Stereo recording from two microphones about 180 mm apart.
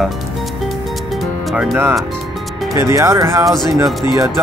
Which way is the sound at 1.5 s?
5° right (ahead or behind).